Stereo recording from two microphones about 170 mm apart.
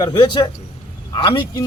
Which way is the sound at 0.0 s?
25° left (ahead or behind).